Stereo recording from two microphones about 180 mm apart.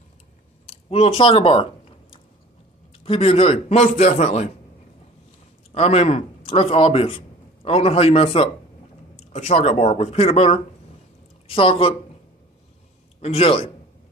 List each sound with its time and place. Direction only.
0.7 s a sound: 35° left (ahead or behind)
3.0 s speech: 35° left (ahead or behind)
5.7 s speech: 35° left (ahead or behind)
13.2 s speech: 35° left (ahead or behind)